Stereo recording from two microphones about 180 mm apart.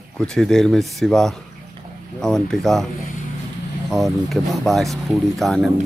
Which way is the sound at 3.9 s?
Centre (ahead or behind).